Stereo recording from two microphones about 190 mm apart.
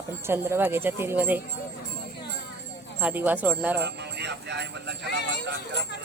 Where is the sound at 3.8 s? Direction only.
65° right (ahead or behind).